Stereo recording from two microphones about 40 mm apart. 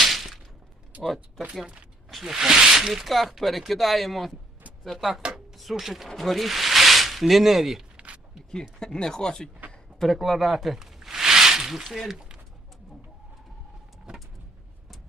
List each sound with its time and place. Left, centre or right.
0.0 s a sound: centre
0.9 s speech: right
2.2 s speech: centre
5.3 s chopping: centre
5.7 s speech: centre
7.9 s a sound: right
8.8 s speech: centre
10.0 s speech: centre
10.8 s a sound: centre